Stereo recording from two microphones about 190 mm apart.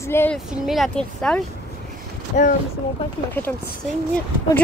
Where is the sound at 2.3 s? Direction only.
40° left (ahead or behind).